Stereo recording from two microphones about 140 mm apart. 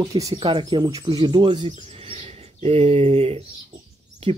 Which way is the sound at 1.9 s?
45° right (ahead or behind).